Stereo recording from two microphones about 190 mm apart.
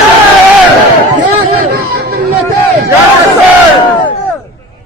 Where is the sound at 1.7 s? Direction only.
60° right (ahead or behind).